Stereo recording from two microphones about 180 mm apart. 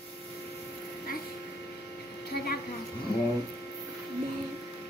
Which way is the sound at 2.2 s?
60° left (ahead or behind).